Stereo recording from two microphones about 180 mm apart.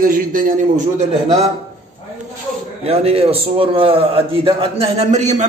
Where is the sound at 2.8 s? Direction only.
35° right (ahead or behind).